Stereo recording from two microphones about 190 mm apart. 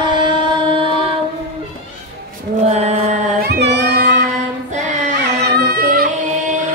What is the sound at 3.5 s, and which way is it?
Music, 65° right (ahead or behind).